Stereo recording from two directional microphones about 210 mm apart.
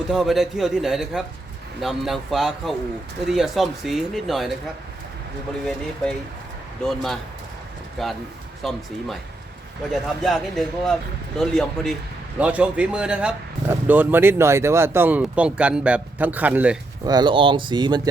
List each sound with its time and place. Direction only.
0.1 s speech: centre (ahead or behind)
6.8 s speech: centre (ahead or behind)
9.9 s speech: centre (ahead or behind)
17.0 s speech: 20° right (ahead or behind)